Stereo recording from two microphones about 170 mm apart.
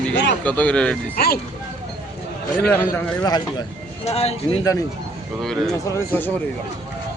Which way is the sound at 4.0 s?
35° left (ahead or behind).